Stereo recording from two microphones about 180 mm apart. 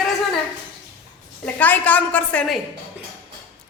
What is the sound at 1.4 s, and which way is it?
A woman's voice, 10° left (ahead or behind).